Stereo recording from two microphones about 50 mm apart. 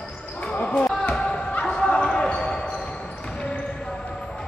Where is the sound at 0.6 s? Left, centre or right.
Left.